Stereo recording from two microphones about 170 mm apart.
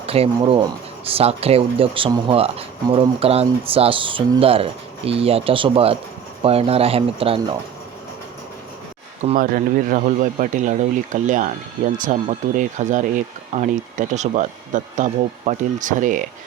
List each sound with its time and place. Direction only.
0.0 s speech: 35° right (ahead or behind)
9.4 s speech: 55° right (ahead or behind)